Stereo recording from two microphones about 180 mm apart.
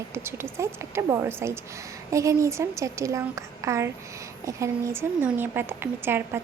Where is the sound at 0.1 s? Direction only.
15° right (ahead or behind).